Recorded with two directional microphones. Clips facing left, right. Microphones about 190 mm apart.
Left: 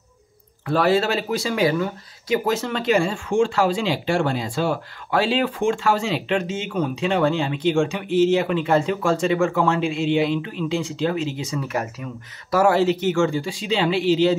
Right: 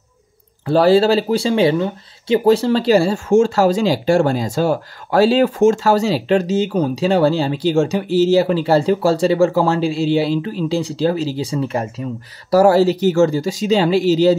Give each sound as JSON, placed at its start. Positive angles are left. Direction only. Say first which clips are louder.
{"t": 0.7, "sound": "speech", "louder": "right 7 dB", "side_deg": -30}